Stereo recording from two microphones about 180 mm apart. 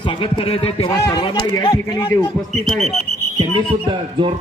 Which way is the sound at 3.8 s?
30° right (ahead or behind).